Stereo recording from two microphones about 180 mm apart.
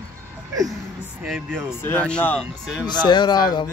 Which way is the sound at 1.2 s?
5° right (ahead or behind).